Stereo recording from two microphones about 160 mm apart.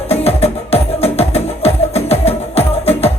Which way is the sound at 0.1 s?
40° left (ahead or behind).